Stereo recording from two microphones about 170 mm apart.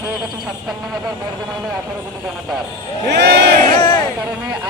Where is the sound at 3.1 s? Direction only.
80° right.